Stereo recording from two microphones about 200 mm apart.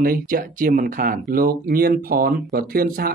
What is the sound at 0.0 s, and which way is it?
Speech, 45° right (ahead or behind).